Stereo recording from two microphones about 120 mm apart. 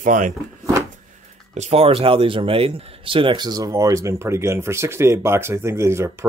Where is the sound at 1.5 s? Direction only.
65° right (ahead or behind).